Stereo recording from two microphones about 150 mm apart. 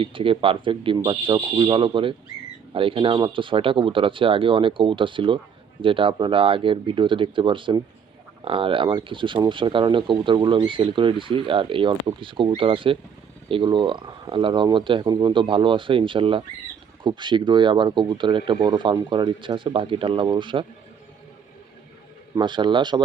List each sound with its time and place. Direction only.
0.0 s speech: 35° right (ahead or behind)
22.4 s speech: 30° right (ahead or behind)